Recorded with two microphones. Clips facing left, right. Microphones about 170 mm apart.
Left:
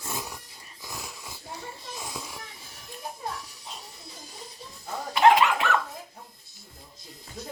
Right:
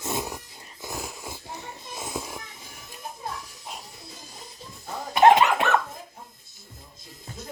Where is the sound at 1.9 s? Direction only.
25° right (ahead or behind).